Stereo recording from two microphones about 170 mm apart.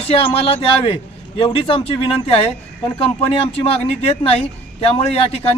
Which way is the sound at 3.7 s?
35° left (ahead or behind).